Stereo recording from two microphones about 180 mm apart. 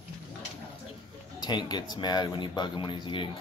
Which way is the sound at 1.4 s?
25° left (ahead or behind).